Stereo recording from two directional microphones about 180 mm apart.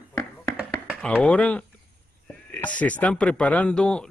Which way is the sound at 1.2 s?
5° left (ahead or behind).